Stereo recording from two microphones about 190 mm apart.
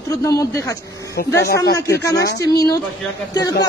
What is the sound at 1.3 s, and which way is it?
Speech, 60° left (ahead or behind).